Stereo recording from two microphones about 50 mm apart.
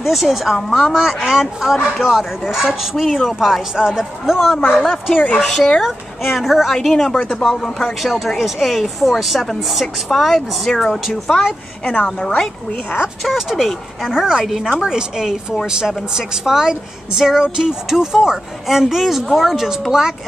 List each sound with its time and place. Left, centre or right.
0.0 s speech: centre
0.9 s a woman's voice: centre
5.4 s speech: centre
7.2 s speech: centre
7.5 s speech: centre
11.8 s a woman's voice: left
13.2 s a woman's voice: centre